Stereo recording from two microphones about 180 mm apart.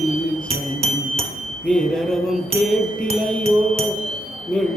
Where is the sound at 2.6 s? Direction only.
Centre (ahead or behind).